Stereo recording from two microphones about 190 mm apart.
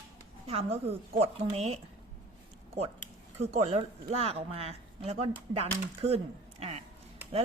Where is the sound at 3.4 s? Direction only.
35° right (ahead or behind).